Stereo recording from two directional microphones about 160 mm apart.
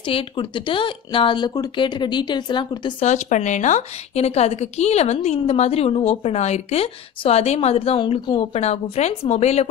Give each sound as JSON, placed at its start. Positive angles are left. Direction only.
{"t": 0.0, "sound": "speech", "side_deg": 30}
{"t": 3.0, "sound": "a woman's voice", "side_deg": 45}